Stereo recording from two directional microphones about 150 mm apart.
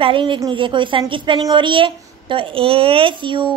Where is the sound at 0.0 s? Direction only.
35° right (ahead or behind).